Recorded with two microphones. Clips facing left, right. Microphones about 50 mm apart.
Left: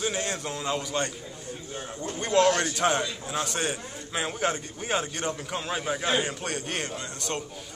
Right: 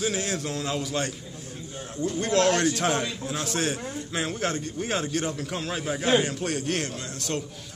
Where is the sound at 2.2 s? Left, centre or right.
Centre.